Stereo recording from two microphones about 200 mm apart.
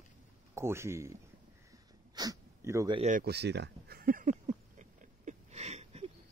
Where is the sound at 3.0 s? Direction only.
40° right (ahead or behind).